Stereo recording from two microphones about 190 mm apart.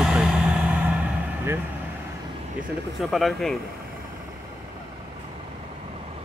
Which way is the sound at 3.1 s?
Centre (ahead or behind).